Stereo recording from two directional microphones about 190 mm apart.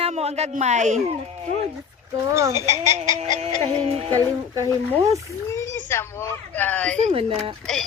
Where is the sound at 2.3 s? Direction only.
15° right (ahead or behind).